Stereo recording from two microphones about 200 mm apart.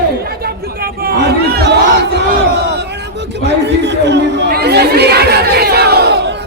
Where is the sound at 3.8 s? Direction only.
60° right (ahead or behind).